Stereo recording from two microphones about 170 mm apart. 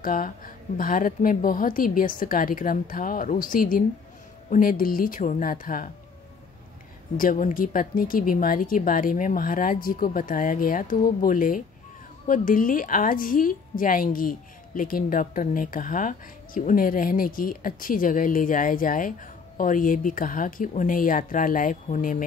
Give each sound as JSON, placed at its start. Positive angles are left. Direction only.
{"t": 0.0, "sound": "a woman's voice", "side_deg": 55}
{"t": 7.2, "sound": "a woman's voice", "side_deg": 55}